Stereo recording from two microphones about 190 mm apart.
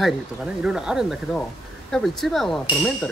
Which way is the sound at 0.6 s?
5° right (ahead or behind).